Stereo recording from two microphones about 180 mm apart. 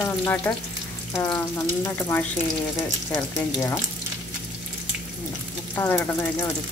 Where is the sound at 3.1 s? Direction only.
15° left (ahead or behind).